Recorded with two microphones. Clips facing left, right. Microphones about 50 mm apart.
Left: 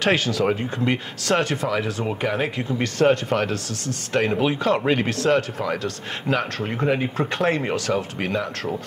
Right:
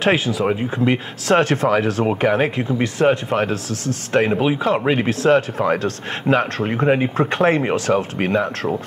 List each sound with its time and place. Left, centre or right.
0.0 s speech: centre
1.4 s speech: right
2.0 s speech: right
2.8 s speech: centre
5.6 s speech: right; by 7.1 s centre
7.2 s speech: right